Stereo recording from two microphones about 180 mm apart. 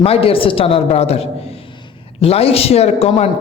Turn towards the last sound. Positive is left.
turn(degrees=35)  # may be behind; listen again after turning